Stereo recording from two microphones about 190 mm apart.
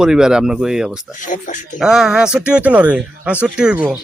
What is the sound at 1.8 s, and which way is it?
A man's voice, 5° right (ahead or behind).